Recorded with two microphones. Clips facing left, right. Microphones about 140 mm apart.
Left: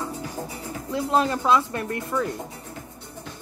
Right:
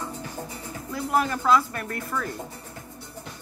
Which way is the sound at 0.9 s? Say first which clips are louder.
Left 3 dB; 25° left (ahead or behind).